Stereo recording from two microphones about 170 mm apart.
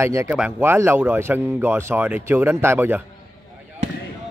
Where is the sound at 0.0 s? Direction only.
15° right (ahead or behind).